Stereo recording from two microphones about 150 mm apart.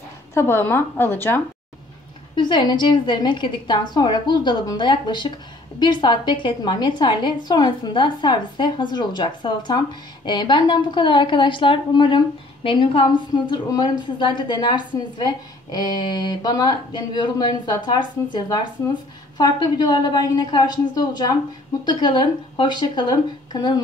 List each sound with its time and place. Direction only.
0.3 s a woman's voice: 15° left (ahead or behind)
2.3 s a woman's voice: 30° left (ahead or behind)